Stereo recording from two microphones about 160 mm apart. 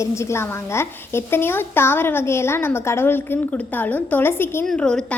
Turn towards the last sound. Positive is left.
turn(degrees=5)  # may be behind; listen again after turning